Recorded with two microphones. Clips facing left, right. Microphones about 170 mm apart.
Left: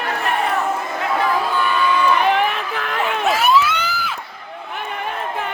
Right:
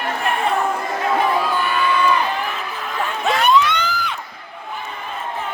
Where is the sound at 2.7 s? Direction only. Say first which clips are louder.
Left 4 dB; 70° left (ahead or behind).